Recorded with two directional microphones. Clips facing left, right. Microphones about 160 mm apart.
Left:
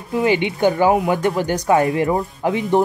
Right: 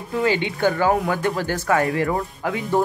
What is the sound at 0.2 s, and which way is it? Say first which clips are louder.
Speech: left 3 dB; 20° left (ahead or behind).